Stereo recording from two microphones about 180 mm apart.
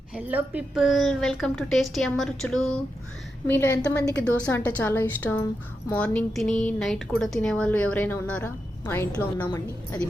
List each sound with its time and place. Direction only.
0.1 s a woman's voice: 10° right (ahead or behind)
3.8 s a woman's voice: 20° left (ahead or behind)
4.2 s speech: 5° left (ahead or behind)